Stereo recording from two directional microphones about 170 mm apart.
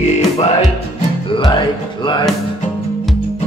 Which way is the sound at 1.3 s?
30° left (ahead or behind).